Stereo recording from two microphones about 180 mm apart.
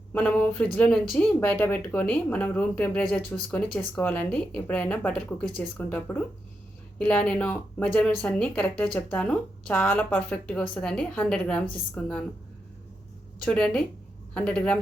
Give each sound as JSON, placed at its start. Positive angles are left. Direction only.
{"t": 0.1, "sound": "speech", "side_deg": 10}
{"t": 7.0, "sound": "speech", "side_deg": 5}
{"t": 13.4, "sound": "speech", "side_deg": 5}